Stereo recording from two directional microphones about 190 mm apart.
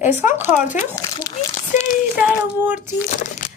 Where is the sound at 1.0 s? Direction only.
20° left (ahead or behind).